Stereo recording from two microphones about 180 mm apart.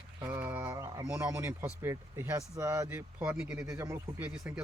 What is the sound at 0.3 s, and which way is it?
Speech, 10° right (ahead or behind).